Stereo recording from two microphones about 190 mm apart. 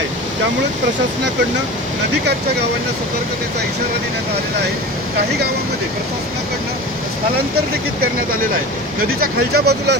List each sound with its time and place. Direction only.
9.2 s speech: 55° right (ahead or behind)